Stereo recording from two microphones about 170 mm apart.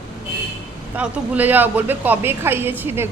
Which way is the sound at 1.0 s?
10° right (ahead or behind).